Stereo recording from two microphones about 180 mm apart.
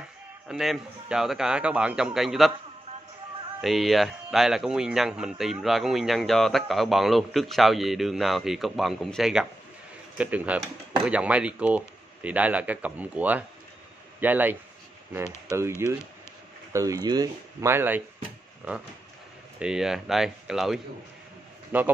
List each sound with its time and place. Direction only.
0.5 s speech: centre (ahead or behind)
3.6 s speech: centre (ahead or behind)
15.2 s speech: 15° left (ahead or behind)
15.8 s speech: 15° right (ahead or behind)